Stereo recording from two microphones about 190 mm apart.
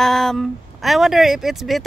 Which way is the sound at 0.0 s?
Centre (ahead or behind).